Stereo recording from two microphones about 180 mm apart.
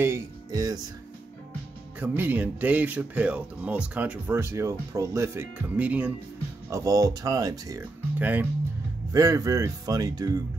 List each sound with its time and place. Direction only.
0.0 s speech: 20° right (ahead or behind)
2.0 s speech: 10° right (ahead or behind)
6.7 s speech: 20° right (ahead or behind)
8.2 s speech: 10° right (ahead or behind)